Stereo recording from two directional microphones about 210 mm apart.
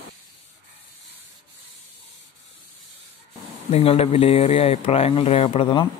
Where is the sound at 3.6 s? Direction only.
30° left (ahead or behind).